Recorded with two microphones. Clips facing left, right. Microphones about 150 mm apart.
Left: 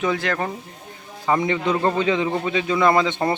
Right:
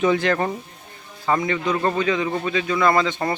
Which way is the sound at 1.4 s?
25° left (ahead or behind).